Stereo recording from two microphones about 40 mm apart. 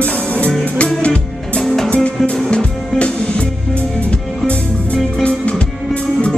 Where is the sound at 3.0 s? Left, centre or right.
Left.